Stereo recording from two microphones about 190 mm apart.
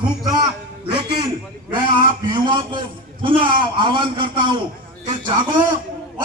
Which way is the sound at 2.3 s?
25° right (ahead or behind).